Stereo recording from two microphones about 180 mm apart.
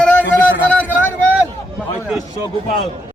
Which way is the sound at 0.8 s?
10° left (ahead or behind).